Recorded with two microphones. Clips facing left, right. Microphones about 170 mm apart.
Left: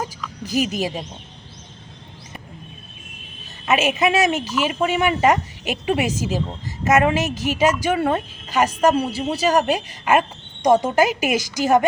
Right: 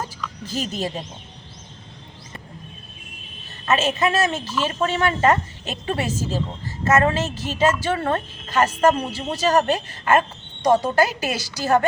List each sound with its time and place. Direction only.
0.0 s speech: 10° left (ahead or behind)
3.7 s a woman's voice: 15° left (ahead or behind)